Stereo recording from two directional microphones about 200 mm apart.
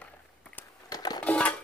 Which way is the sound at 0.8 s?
20° left (ahead or behind).